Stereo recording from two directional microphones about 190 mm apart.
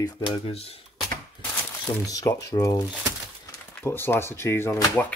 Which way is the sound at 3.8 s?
10° left (ahead or behind).